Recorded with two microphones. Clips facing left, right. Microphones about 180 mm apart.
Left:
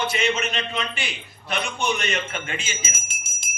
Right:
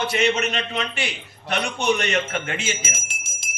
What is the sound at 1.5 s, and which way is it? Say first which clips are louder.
Speech: right 4 dB; 70° right (ahead or behind).